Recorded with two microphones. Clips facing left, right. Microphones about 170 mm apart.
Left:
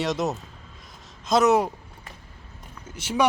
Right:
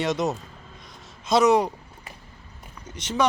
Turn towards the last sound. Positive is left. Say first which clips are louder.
# left 1 dB
turn(degrees=10)  # may be behind; listen again after turning